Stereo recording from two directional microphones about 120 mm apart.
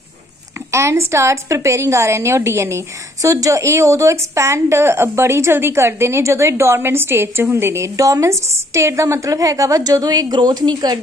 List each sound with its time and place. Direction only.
0.7 s a woman's voice: 25° right (ahead or behind)